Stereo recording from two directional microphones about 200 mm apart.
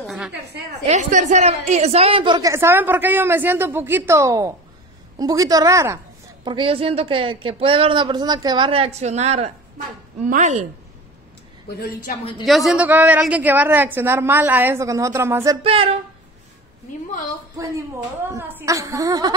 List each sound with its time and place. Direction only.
0.0 s a sound: centre (ahead or behind)
0.8 s a woman's voice: 35° right (ahead or behind); by 5.9 s 15° right (ahead or behind)
6.4 s a woman's voice: 25° right (ahead or behind)
11.7 s a woman's voice: 50° left (ahead or behind)
12.4 s a woman's voice: centre (ahead or behind)
15.6 s a woman's voice: 30° right (ahead or behind)
18.3 s a woman's voice: 15° right (ahead or behind)